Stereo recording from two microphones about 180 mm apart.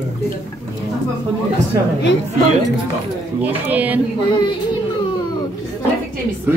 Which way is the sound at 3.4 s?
10° right (ahead or behind).